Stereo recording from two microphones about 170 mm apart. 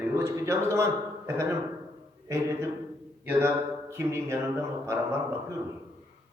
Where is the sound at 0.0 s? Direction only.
15° right (ahead or behind).